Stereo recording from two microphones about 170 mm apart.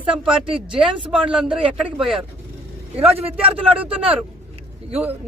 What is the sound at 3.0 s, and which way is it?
Speech, 35° right (ahead or behind).